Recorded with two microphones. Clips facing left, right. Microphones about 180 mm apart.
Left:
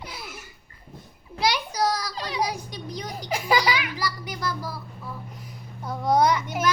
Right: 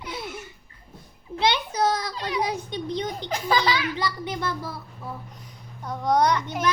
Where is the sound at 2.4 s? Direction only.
25° right (ahead or behind).